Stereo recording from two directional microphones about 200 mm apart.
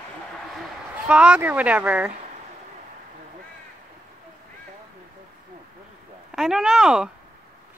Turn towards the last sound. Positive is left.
turn(degrees=-5)  # may be behind; listen again after turning